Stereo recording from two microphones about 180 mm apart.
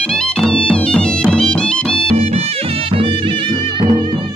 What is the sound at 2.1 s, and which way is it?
Music, 35° right (ahead or behind).